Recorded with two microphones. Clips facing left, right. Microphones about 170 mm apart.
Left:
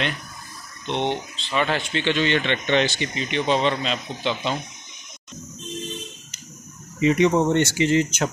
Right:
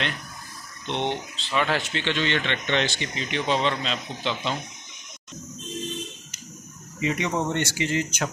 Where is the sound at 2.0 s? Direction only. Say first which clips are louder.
Left 5 dB; 10° left (ahead or behind).